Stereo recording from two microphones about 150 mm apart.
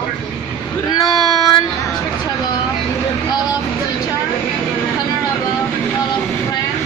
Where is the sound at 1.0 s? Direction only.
Centre (ahead or behind).